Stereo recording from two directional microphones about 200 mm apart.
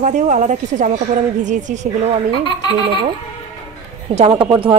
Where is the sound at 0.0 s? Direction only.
35° right (ahead or behind).